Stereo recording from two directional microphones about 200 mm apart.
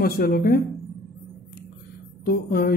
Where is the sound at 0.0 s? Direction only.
50° left (ahead or behind).